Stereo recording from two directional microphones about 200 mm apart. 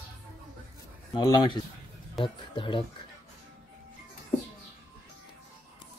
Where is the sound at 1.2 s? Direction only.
20° left (ahead or behind).